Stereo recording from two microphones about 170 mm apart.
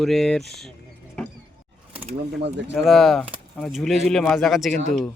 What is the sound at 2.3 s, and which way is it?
Speech, 90° right.